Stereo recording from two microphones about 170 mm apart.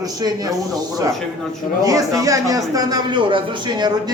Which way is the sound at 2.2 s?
20° right (ahead or behind).